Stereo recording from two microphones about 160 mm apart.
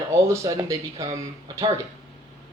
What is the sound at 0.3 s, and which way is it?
Speech, 20° right (ahead or behind).